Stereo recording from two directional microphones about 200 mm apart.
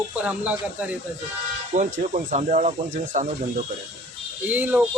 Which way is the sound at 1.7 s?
40° right (ahead or behind).